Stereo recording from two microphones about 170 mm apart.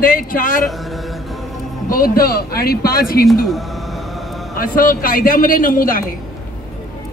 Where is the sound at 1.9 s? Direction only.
60° left (ahead or behind).